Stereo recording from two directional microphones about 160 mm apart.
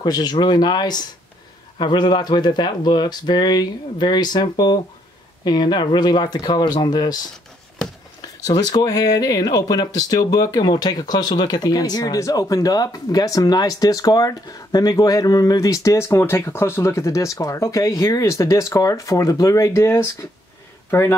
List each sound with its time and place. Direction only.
0.0 s speech: 25° left (ahead or behind)
8.2 s speech: 25° left (ahead or behind)